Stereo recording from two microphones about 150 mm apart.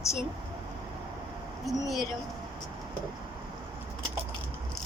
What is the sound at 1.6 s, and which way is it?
Speech, centre (ahead or behind).